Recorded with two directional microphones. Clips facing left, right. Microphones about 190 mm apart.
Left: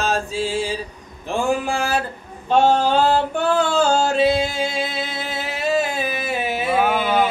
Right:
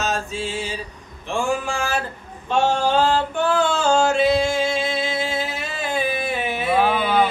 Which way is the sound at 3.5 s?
35° left (ahead or behind).